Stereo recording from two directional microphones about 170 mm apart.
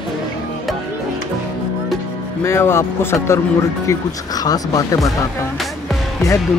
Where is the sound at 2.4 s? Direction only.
15° left (ahead or behind).